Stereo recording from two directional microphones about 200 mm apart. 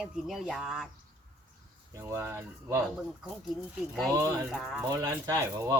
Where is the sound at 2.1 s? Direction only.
10° right (ahead or behind).